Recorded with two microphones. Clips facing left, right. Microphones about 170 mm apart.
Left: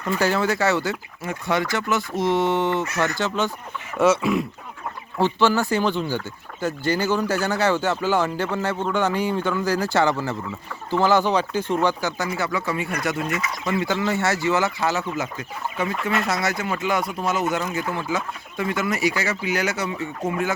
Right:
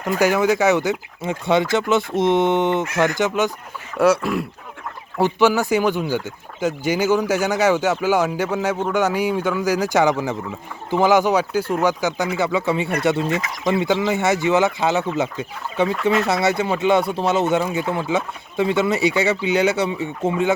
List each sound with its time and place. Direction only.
0.2 s speech: 15° right (ahead or behind)
3.9 s speech: centre (ahead or behind)
5.1 s speech: 10° right (ahead or behind)